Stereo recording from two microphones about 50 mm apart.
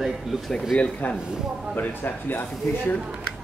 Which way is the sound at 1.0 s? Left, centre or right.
Left.